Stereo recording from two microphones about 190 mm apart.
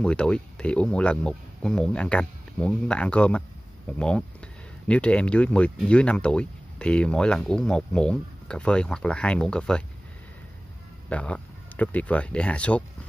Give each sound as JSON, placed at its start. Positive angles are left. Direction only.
{"t": 0.0, "sound": "speech", "side_deg": 5}
{"t": 4.8, "sound": "speech", "side_deg": 5}
{"t": 11.1, "sound": "speech", "side_deg": 5}